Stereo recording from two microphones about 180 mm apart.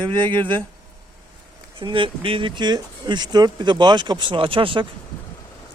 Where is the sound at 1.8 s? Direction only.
30° right (ahead or behind).